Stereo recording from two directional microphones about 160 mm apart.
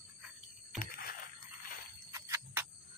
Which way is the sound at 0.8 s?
65° left (ahead or behind).